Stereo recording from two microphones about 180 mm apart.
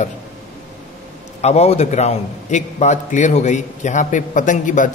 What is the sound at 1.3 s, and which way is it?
A man's voice, 35° left (ahead or behind).